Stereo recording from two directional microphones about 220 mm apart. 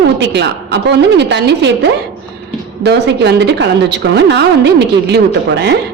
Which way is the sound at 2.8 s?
50° right (ahead or behind).